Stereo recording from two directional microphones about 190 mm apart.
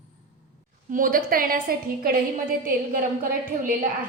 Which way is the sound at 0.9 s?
45° right (ahead or behind).